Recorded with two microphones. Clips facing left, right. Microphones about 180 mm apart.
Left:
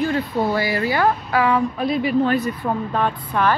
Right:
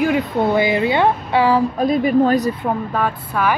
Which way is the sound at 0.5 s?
20° right (ahead or behind).